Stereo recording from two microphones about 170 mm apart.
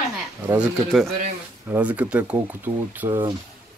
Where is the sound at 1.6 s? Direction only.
10° right (ahead or behind).